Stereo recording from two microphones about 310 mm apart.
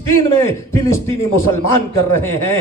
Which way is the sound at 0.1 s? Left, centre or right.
Left.